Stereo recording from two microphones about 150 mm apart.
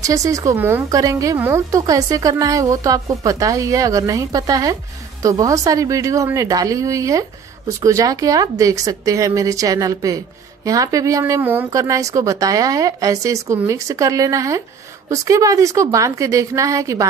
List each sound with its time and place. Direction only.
0.0 s speech: 20° right (ahead or behind)